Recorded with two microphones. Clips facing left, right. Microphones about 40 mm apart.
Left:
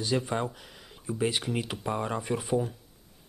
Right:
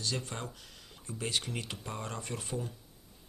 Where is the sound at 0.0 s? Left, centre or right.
Centre.